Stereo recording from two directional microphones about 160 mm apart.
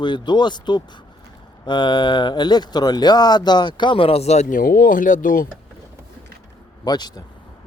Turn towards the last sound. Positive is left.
turn(degrees=25)  # may be behind; listen again after turning